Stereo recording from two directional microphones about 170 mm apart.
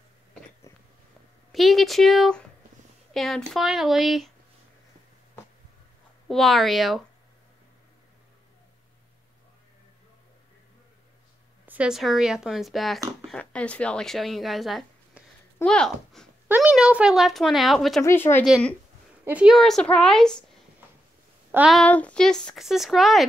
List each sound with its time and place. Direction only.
1.5 s speech: centre (ahead or behind)
6.2 s speech: centre (ahead or behind)
11.6 s speech: 10° right (ahead or behind)
16.4 s a sound: 10° right (ahead or behind)
16.7 s speech: 5° right (ahead or behind)
18.0 s speech: 15° left (ahead or behind)
21.5 s speech: 10° right (ahead or behind)
21.7 s speech: 10° left (ahead or behind)